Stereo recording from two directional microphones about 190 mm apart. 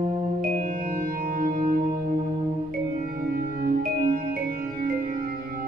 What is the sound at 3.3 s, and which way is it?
Music, 50° right (ahead or behind).